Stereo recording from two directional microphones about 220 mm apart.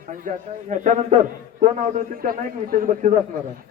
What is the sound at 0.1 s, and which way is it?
A man's voice, 35° right (ahead or behind).